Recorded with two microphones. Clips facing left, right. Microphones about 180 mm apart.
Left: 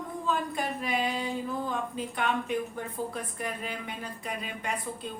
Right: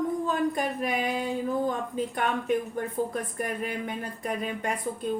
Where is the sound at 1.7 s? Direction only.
50° right (ahead or behind).